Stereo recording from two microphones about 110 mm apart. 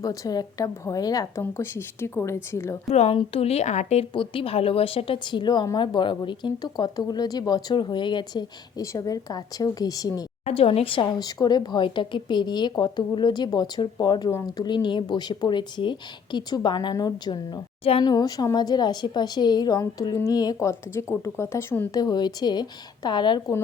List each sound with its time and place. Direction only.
0.0 s speech: 30° left (ahead or behind)
1.4 s a woman's voice: 25° left (ahead or behind)
2.9 s speech: 75° left (ahead or behind)
3.2 s speech: 65° left (ahead or behind); by 4.0 s 85° left
4.1 s a woman's voice: 55° left (ahead or behind)
8.8 s speech: 30° left (ahead or behind)
10.4 s a woman's voice: 60° left (ahead or behind); by 21.8 s 20° left (ahead or behind)
21.9 s speech: 35° left (ahead or behind)